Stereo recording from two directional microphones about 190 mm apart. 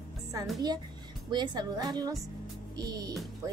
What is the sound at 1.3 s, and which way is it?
A woman's voice, 25° right (ahead or behind).